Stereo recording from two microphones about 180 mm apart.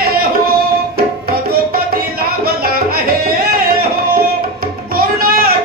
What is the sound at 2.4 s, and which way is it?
Music, 55° right (ahead or behind).